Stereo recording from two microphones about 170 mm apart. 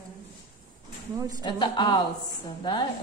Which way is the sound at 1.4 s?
25° left (ahead or behind).